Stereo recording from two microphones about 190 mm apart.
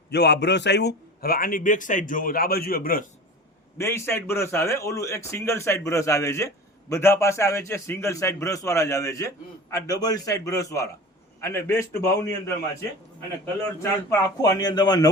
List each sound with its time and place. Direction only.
0.1 s a man's voice: 60° left (ahead or behind)
3.8 s a man's voice: 15° left (ahead or behind)
14.1 s speech: 20° left (ahead or behind)